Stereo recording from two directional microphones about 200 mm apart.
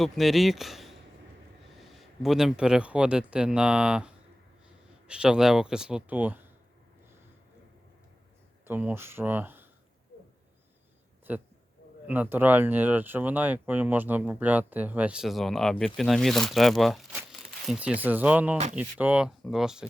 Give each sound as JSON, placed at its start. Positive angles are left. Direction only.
{"t": 0.0, "sound": "speech", "side_deg": 0}
{"t": 2.0, "sound": "speech", "side_deg": 0}
{"t": 8.6, "sound": "speech", "side_deg": -10}
{"t": 11.3, "sound": "speech", "side_deg": -10}
{"t": 18.5, "sound": "speech", "side_deg": -35}
{"t": 18.8, "sound": "speech", "side_deg": -5}